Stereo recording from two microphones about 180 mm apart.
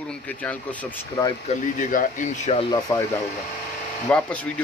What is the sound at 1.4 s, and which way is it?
Speech, 45° left (ahead or behind).